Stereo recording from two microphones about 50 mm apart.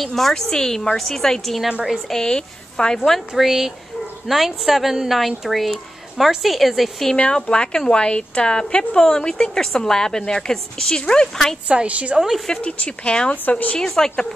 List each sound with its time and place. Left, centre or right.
0.0 s a woman's voice: centre
2.1 s a woman's voice: centre
3.3 s a woman's voice: centre
7.2 s a woman's voice: left
11.6 s a woman's voice: right
12.2 s a woman's voice: centre
12.6 s a woman's voice: left; by 14.2 s centre